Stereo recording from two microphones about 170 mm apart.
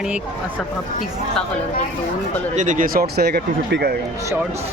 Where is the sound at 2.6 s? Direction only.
50° right (ahead or behind); by 3.9 s 65° right (ahead or behind).